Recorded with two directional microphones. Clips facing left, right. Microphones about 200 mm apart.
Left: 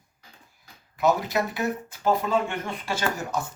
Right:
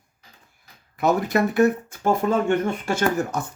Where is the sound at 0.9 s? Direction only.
55° right (ahead or behind).